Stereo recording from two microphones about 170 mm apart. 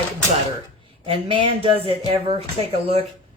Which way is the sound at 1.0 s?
30° right (ahead or behind).